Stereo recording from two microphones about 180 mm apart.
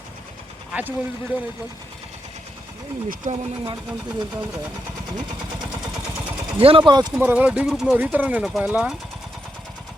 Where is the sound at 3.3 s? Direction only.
40° right (ahead or behind).